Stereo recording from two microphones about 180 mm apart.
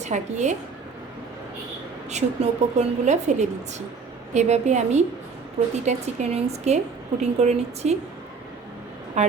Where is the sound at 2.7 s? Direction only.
40° right (ahead or behind).